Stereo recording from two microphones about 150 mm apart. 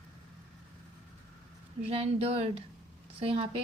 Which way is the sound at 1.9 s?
40° right (ahead or behind).